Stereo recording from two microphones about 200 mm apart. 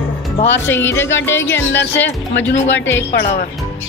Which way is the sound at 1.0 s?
70° left (ahead or behind).